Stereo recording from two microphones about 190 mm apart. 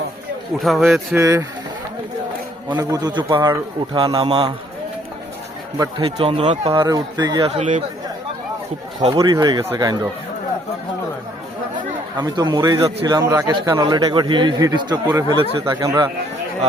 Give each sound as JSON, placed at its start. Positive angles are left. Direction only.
{"t": 0.6, "sound": "speech", "side_deg": 0}
{"t": 1.1, "sound": "speech", "side_deg": -15}
{"t": 2.6, "sound": "a man's voice", "side_deg": -20}
{"t": 5.7, "sound": "a man's voice", "side_deg": -20}
{"t": 7.5, "sound": "speech", "side_deg": -35}
{"t": 9.1, "sound": "a man's voice", "side_deg": -20}
{"t": 12.1, "sound": "a man's voice", "side_deg": -20}